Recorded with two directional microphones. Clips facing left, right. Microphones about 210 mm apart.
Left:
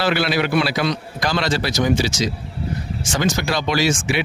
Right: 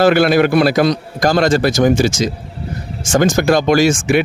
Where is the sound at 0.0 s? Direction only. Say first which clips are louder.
Right 9 dB; 50° right (ahead or behind).